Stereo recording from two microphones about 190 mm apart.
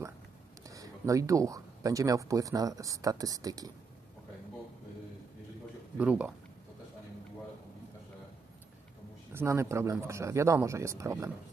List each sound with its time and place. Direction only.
0.7 s speech: 15° right (ahead or behind)
5.9 s speech: 5° right (ahead or behind)
9.3 s speech: 10° right (ahead or behind)